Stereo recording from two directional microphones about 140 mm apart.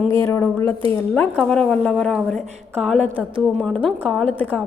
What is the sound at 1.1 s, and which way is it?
A woman's voice, 5° left (ahead or behind).